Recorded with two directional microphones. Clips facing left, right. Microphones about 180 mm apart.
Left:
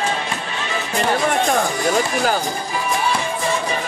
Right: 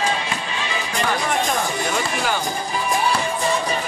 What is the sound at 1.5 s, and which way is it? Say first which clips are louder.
Speech: left 5 dB; 40° left (ahead or behind).